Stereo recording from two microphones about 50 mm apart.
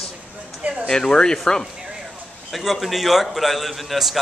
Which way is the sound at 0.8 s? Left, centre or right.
Centre.